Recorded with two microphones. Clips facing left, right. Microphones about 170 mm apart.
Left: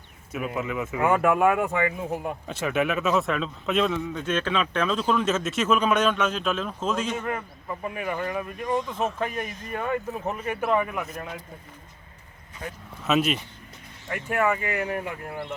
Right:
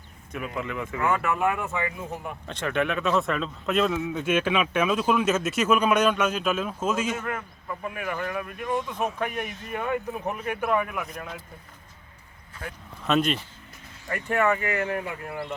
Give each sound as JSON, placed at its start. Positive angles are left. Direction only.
{"t": 0.3, "sound": "speech", "side_deg": 5}
{"t": 1.1, "sound": "speech", "side_deg": 50}
{"t": 2.5, "sound": "speech", "side_deg": 5}
{"t": 12.6, "sound": "speech", "side_deg": 5}